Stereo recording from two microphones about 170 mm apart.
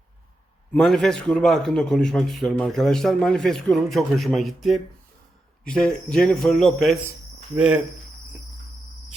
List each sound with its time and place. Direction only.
0.7 s a man's voice: 5° left (ahead or behind)
7.5 s cricket: 5° right (ahead or behind)